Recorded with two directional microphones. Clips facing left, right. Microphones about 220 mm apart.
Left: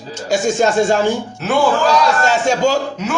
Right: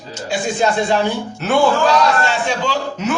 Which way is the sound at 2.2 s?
45° left (ahead or behind).